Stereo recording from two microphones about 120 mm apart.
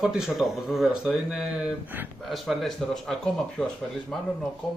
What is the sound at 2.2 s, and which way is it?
Speech, centre (ahead or behind).